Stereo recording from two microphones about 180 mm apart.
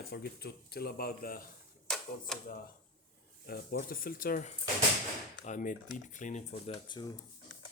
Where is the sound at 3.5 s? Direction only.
55° left (ahead or behind).